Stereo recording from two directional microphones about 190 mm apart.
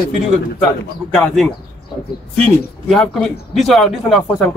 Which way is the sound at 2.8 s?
Centre (ahead or behind).